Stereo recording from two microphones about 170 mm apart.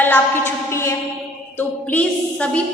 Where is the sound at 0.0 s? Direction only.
10° left (ahead or behind).